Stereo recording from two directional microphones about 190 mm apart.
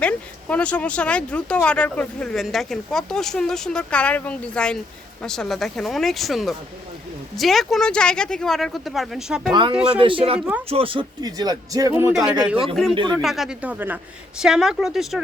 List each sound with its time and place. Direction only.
0.0 s speech: 5° left (ahead or behind)
9.5 s speech: 25° right (ahead or behind)
9.7 s speech: 5° right (ahead or behind)
10.0 s speech: 30° right (ahead or behind)
12.1 s speech: 5° right (ahead or behind)
12.9 s speech: 25° right (ahead or behind)
13.2 s speech: centre (ahead or behind)